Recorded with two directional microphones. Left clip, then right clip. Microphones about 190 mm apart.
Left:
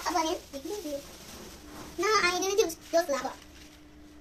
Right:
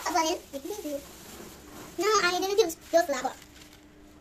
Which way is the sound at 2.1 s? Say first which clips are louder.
Right 1 dB; 15° right (ahead or behind).